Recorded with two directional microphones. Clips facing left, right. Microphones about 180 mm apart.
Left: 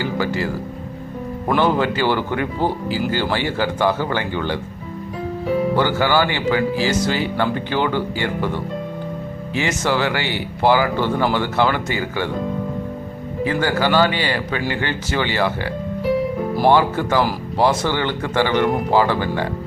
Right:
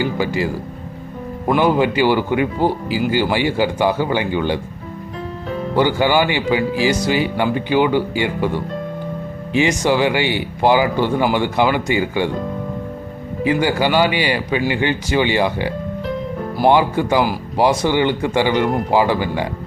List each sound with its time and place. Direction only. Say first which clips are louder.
0.0 s speech: right 2 dB; 15° right (ahead or behind)
1.5 s speech: right 3 dB; 10° right (ahead or behind)
5.7 s speech: right 6 dB; 15° right (ahead or behind)
13.4 s speech: right 2 dB; 15° right (ahead or behind)